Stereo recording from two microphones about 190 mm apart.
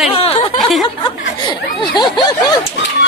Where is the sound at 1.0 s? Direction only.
25° left (ahead or behind).